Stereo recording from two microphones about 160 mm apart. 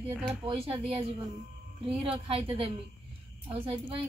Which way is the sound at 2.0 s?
35° right (ahead or behind).